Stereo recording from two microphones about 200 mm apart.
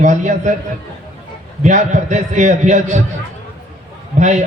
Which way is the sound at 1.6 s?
35° right (ahead or behind).